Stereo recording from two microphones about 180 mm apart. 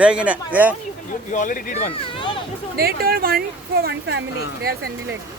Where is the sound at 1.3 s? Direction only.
45° left (ahead or behind).